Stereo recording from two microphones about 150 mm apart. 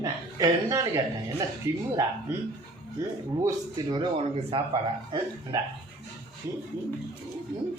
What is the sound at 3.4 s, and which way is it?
Speech, 30° right (ahead or behind).